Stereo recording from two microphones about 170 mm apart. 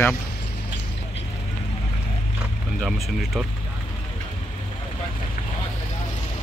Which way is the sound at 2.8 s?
Centre (ahead or behind).